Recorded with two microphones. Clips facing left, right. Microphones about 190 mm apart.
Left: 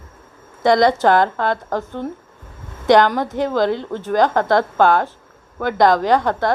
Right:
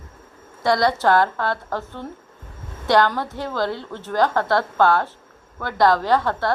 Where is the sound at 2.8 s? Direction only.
20° left (ahead or behind).